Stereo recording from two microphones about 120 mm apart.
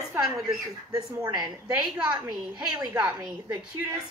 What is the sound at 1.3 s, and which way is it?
A woman's voice, 35° right (ahead or behind).